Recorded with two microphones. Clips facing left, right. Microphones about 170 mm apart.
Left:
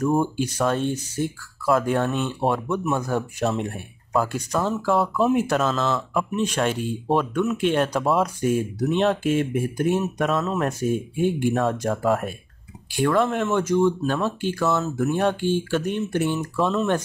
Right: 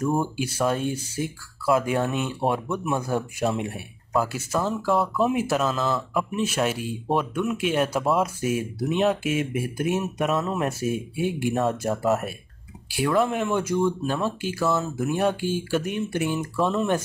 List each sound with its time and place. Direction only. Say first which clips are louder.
0.2 s speech: left 2 dB; 10° right (ahead or behind)